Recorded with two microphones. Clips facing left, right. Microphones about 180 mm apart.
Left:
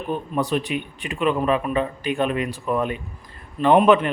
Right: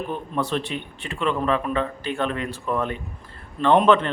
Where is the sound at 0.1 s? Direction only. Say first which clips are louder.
Left 6 dB; 15° left (ahead or behind).